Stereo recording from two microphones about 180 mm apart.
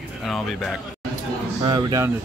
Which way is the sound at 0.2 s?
Centre (ahead or behind).